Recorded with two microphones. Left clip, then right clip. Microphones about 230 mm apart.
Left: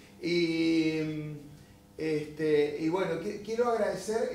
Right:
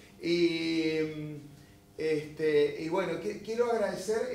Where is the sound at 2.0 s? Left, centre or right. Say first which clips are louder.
Right 1 dB; right.